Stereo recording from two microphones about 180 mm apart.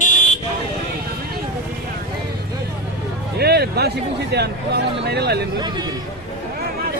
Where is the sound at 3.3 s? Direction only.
65° right (ahead or behind).